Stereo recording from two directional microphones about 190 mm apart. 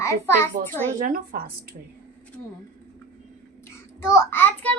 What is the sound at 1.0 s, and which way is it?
Speech, 50° right (ahead or behind).